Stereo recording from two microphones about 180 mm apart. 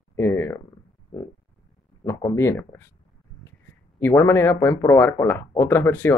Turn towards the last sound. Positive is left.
turn(degrees=10)  # may be behind; listen again after turning